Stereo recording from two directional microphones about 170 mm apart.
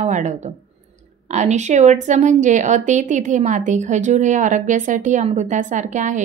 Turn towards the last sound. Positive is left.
turn(degrees=-45)  # may be behind; listen again after turning